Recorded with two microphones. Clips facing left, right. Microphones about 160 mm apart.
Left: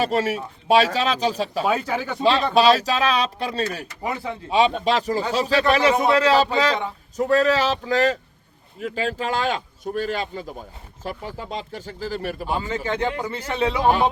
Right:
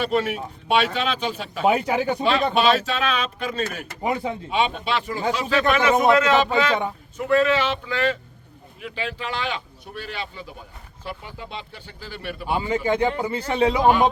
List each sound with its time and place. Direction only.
0.0 s speech: 40° left (ahead or behind)
1.6 s speech: 20° right (ahead or behind)
2.6 s speech: 35° left (ahead or behind)
4.0 s speech: 20° right (ahead or behind)
4.4 s speech: 40° left (ahead or behind)
12.5 s speech: 10° right (ahead or behind)